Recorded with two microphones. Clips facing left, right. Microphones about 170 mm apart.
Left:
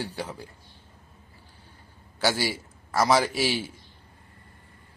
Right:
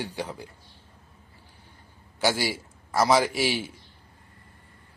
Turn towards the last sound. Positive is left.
turn(degrees=-15)  # may be behind; listen again after turning